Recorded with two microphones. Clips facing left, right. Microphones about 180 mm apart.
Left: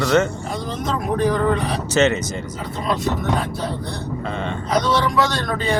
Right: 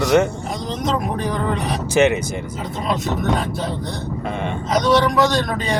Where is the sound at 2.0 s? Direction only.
15° right (ahead or behind).